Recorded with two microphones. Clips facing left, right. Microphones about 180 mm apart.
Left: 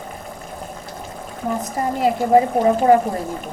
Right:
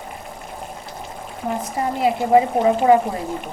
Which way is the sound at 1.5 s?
40° left (ahead or behind).